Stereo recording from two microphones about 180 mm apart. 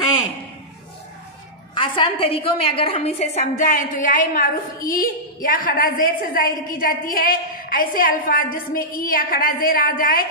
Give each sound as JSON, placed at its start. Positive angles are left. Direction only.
{"t": 1.8, "sound": "a woman's voice", "side_deg": 30}